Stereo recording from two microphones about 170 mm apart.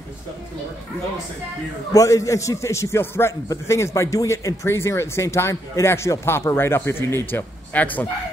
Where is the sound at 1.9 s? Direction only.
20° left (ahead or behind).